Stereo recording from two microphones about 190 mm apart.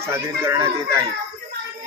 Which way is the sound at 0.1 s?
15° right (ahead or behind).